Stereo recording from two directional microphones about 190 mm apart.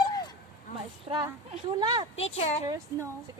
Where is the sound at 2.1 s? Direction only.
30° left (ahead or behind).